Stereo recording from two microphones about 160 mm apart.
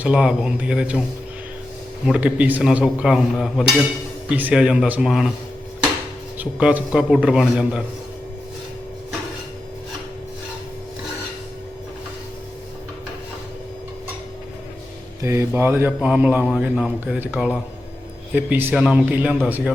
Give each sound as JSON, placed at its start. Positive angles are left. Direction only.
{"t": 0.0, "sound": "a man's voice", "side_deg": -5}
{"t": 2.0, "sound": "a man's voice", "side_deg": -10}
{"t": 6.4, "sound": "a man's voice", "side_deg": -10}
{"t": 15.2, "sound": "a man's voice", "side_deg": -15}